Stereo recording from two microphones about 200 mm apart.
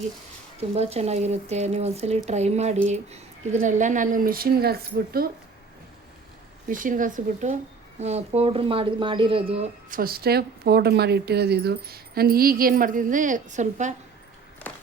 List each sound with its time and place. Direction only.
0.8 s speech: 30° right (ahead or behind); by 5.3 s 50° right (ahead or behind)
6.7 s speech: 40° right (ahead or behind)
9.9 s speech: 50° right (ahead or behind)